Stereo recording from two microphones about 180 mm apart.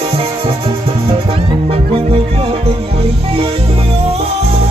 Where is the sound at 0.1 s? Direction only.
30° right (ahead or behind).